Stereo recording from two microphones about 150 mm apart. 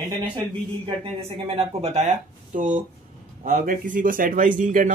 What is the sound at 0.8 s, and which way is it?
Speech, 40° right (ahead or behind).